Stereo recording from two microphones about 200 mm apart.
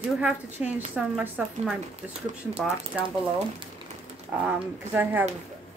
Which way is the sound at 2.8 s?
25° right (ahead or behind).